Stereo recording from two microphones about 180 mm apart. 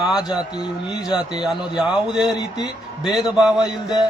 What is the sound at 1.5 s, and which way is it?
Speech, 5° right (ahead or behind).